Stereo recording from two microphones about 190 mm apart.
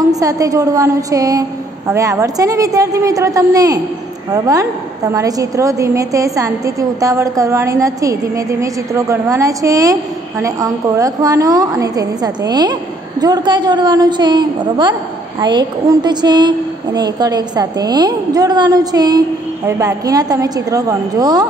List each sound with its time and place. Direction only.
0.1 s a woman's voice: 20° right (ahead or behind)